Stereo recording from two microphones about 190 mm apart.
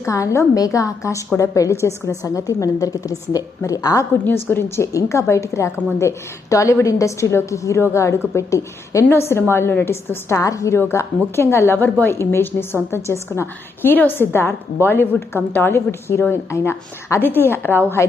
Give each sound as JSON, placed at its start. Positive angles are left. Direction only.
{"t": 0.0, "sound": "a woman's voice", "side_deg": 15}